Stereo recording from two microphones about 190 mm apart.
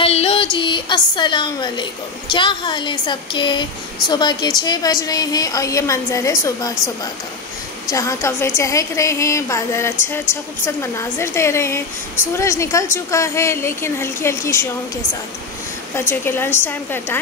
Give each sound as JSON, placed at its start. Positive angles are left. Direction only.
{"t": 0.0, "sound": "a woman's voice", "side_deg": 30}
{"t": 7.9, "sound": "a woman's voice", "side_deg": 15}
{"t": 16.1, "sound": "a woman's voice", "side_deg": 10}